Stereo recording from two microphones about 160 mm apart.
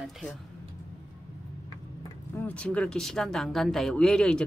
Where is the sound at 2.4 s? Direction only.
10° left (ahead or behind).